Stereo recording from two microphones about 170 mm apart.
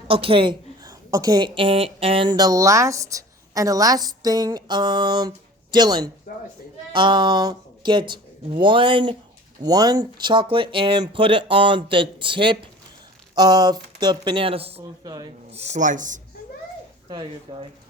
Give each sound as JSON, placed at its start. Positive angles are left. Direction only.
{"t": 0.1, "sound": "a woman's voice", "side_deg": -30}
{"t": 17.1, "sound": "a woman's voice", "side_deg": -30}